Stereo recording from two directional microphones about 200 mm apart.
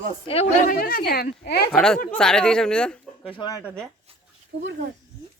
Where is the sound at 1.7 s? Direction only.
5° left (ahead or behind).